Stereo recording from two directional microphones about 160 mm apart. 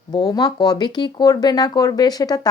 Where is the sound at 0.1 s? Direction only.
25° left (ahead or behind).